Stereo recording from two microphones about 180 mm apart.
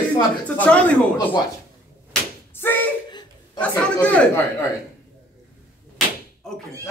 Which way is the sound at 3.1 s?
25° left (ahead or behind).